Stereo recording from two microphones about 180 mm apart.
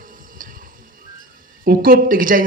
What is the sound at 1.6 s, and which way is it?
Speech, 50° right (ahead or behind).